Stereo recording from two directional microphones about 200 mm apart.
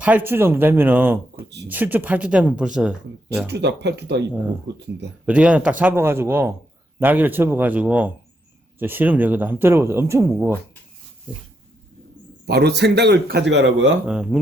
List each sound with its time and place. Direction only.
0.0 s speech: 10° right (ahead or behind)
3.4 s speech: 60° right (ahead or behind)
4.3 s speech: 10° right (ahead or behind)
12.5 s speech: 55° right (ahead or behind)
14.1 s speech: 5° right (ahead or behind)